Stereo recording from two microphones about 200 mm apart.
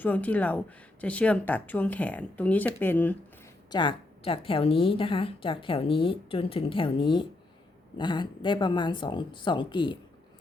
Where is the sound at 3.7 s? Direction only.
25° left (ahead or behind).